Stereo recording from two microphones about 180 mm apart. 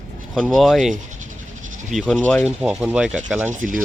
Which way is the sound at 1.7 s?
45° right (ahead or behind).